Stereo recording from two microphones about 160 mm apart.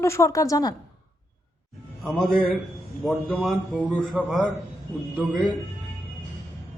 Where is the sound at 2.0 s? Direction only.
Centre (ahead or behind).